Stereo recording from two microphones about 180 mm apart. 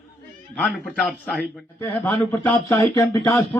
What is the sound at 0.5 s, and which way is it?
A man's voice, centre (ahead or behind).